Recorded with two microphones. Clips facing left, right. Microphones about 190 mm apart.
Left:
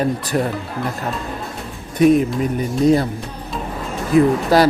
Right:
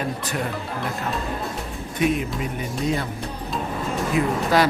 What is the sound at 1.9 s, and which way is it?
Speech, 40° left (ahead or behind).